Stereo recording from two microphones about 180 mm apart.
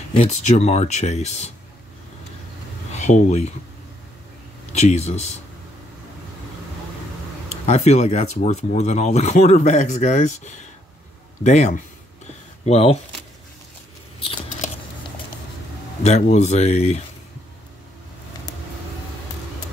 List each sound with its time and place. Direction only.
0.1 s speech: 35° left (ahead or behind)
3.0 s speech: 40° left (ahead or behind)
4.7 s speech: 40° left (ahead or behind)
7.4 s speech: 40° left (ahead or behind)
16.0 s speech: 40° left (ahead or behind)